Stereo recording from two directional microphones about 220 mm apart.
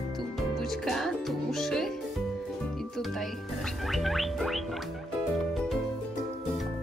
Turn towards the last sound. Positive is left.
turn(degrees=0)  # may be behind; listen again after turning